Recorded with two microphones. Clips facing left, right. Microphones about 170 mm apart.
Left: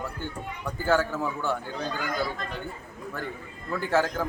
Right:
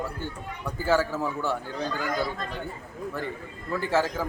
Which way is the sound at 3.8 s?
Centre (ahead or behind).